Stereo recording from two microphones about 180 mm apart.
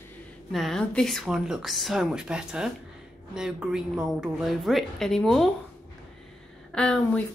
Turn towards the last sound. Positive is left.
turn(degrees=5)  # may be behind; listen again after turning